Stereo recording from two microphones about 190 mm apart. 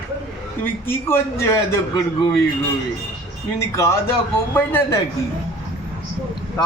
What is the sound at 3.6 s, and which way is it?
A man's voice, 15° left (ahead or behind).